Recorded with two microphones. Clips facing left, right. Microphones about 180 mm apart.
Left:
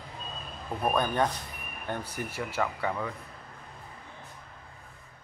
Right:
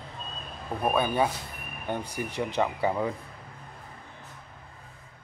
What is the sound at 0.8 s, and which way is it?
Speech, 5° right (ahead or behind).